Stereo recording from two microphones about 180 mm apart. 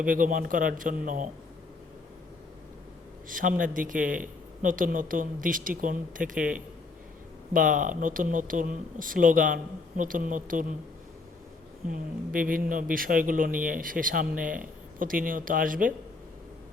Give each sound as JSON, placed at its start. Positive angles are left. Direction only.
{"t": 0.0, "sound": "speech", "side_deg": -50}
{"t": 3.2, "sound": "speech", "side_deg": -50}
{"t": 7.5, "sound": "speech", "side_deg": -50}
{"t": 11.9, "sound": "speech", "side_deg": -50}